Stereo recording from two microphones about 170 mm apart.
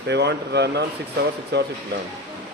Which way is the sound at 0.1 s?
85° right.